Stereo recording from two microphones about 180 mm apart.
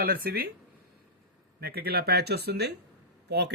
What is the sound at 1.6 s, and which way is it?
Speech, 60° right (ahead or behind).